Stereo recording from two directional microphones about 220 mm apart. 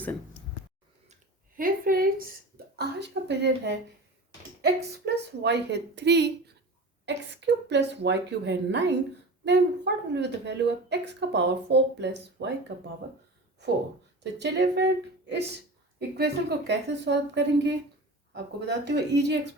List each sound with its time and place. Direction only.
1.5 s a woman's voice: 40° right (ahead or behind)
14.3 s speech: 50° right (ahead or behind)